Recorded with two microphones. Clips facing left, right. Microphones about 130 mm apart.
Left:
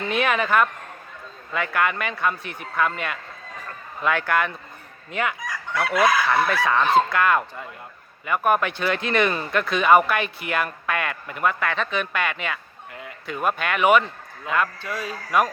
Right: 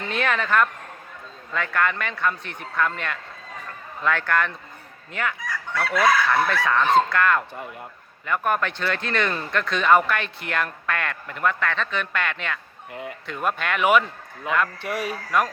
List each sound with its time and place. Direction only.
0.1 s speech: 15° left (ahead or behind)
5.1 s chicken: 15° left (ahead or behind)
6.5 s speech: 5° left (ahead or behind)
12.9 s a sound: 25° right (ahead or behind)
13.2 s speech: 5° left (ahead or behind)
14.8 s speech: 20° right (ahead or behind)